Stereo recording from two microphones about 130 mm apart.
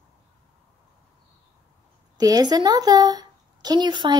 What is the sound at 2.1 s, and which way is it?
A woman's voice, 30° right (ahead or behind).